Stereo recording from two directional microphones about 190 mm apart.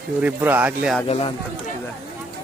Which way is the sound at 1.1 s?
30° left (ahead or behind).